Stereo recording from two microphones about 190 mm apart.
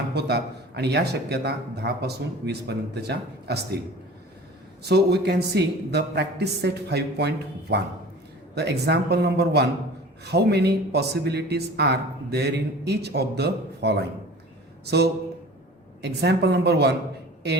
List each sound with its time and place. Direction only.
0.1 s speech: 60° right (ahead or behind)
4.8 s speech: 60° right (ahead or behind)